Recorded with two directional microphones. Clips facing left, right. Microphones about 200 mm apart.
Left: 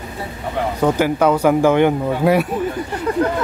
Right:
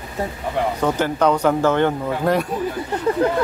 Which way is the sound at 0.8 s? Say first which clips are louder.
Left 6 dB; 10° left (ahead or behind).